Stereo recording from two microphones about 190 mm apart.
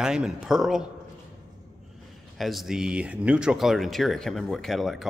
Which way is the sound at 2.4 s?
Centre (ahead or behind).